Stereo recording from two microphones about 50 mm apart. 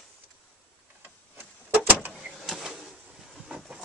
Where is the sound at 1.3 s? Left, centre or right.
Right.